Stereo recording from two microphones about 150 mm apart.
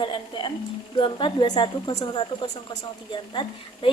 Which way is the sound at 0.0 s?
35° left (ahead or behind).